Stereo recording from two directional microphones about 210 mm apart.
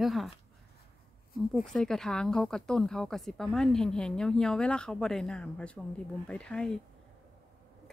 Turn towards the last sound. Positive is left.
turn(degrees=5)  # may be behind; listen again after turning